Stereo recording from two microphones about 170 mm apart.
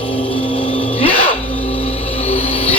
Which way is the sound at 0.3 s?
30° left (ahead or behind).